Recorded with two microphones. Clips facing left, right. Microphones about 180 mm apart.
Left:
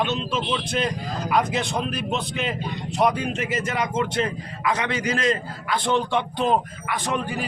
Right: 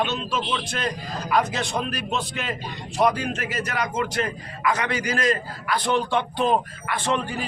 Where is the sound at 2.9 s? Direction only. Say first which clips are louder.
Even; 20° left (ahead or behind).